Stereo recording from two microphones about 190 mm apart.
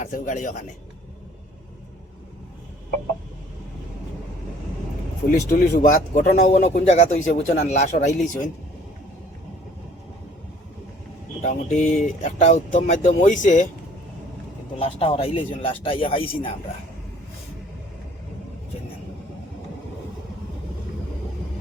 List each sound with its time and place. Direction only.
0.0 s speech: 40° left (ahead or behind)
5.3 s speech: 45° left (ahead or behind)
11.4 s speech: 40° left (ahead or behind)
14.8 s speech: 30° left (ahead or behind)